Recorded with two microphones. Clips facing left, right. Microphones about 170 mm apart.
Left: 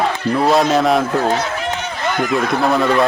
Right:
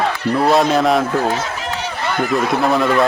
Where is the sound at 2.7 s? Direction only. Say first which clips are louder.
Left 1 dB; centre (ahead or behind).